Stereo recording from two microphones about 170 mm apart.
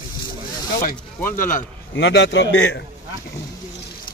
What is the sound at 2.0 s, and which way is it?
Speech, 85° left.